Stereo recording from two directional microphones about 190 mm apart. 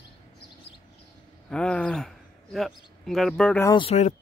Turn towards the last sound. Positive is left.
turn(degrees=35)  # may be behind; listen again after turning